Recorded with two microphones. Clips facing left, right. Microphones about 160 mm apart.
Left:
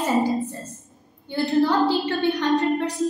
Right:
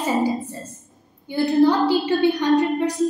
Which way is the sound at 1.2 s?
15° right (ahead or behind).